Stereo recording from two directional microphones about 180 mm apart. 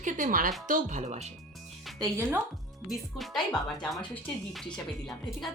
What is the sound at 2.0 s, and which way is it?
Speech, 15° right (ahead or behind).